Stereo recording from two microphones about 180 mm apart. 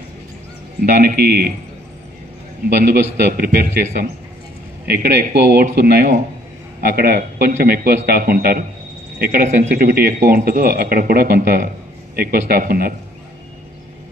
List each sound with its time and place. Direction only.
1.0 s a man's voice: 60° right (ahead or behind)
2.8 s a man's voice: 60° right (ahead or behind)